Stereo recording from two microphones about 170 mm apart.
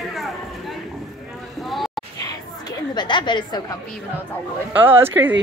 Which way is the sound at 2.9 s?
25° left (ahead or behind).